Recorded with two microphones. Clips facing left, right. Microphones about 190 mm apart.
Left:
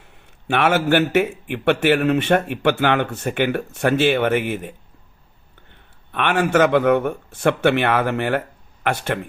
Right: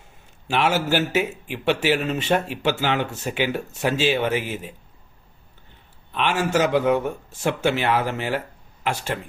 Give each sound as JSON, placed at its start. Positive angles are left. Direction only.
{"t": 0.4, "sound": "a man's voice", "side_deg": 60}
{"t": 6.1, "sound": "a man's voice", "side_deg": 60}